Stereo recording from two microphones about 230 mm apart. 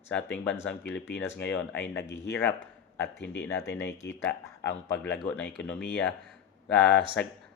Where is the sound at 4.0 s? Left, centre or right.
Centre.